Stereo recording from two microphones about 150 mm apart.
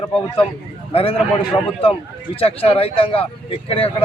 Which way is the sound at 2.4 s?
40° left (ahead or behind).